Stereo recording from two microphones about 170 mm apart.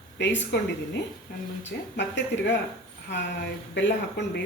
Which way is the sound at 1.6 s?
90° left.